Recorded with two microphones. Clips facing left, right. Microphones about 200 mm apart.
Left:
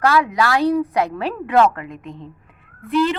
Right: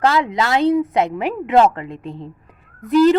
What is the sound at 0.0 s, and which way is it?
A woman's voice, 25° right (ahead or behind).